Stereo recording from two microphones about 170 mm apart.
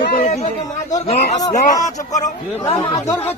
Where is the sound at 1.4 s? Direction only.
20° left (ahead or behind).